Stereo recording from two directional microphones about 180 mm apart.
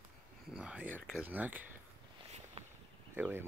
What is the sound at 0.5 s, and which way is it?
Speech, 5° right (ahead or behind).